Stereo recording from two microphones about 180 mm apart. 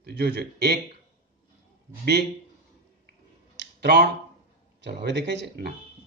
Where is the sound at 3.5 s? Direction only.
70° right (ahead or behind).